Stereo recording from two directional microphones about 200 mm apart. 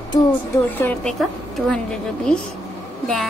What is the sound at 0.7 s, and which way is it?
A woman's voice, 10° left (ahead or behind).